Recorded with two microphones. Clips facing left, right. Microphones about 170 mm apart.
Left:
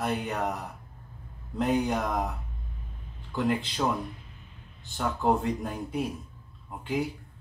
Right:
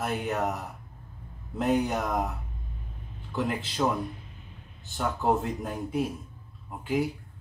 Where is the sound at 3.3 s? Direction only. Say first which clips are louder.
Left 1 dB; centre (ahead or behind).